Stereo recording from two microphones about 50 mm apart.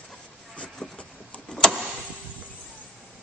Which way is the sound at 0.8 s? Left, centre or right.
Centre.